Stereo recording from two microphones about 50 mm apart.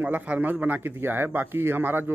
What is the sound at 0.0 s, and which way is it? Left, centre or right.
Speech, right.